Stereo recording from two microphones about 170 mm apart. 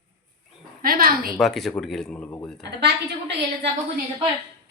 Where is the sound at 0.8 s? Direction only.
60° right (ahead or behind).